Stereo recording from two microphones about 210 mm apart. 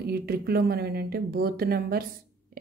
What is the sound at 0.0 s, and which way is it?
Speech, 45° right (ahead or behind).